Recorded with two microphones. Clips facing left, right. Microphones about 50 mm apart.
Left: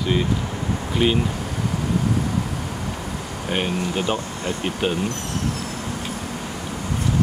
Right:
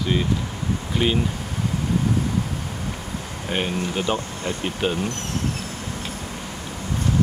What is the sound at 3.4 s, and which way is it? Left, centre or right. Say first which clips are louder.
Speech: left 1 dB; centre.